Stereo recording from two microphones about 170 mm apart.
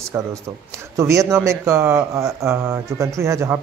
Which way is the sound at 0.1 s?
15° right (ahead or behind).